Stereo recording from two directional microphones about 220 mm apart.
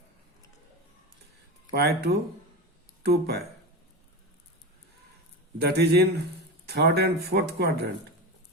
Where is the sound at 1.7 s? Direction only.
45° right (ahead or behind).